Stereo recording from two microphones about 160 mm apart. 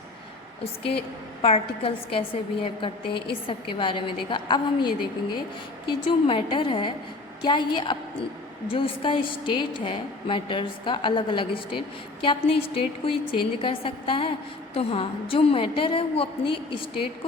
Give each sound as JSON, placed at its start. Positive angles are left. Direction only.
{"t": 0.6, "sound": "a woman's voice", "side_deg": 35}